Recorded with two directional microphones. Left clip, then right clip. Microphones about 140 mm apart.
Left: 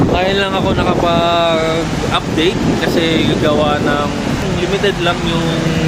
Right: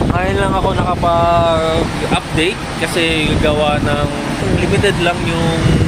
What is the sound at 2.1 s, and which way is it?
Speech, 10° left (ahead or behind).